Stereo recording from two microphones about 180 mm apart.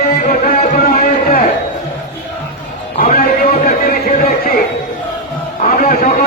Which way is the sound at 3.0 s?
50° left (ahead or behind).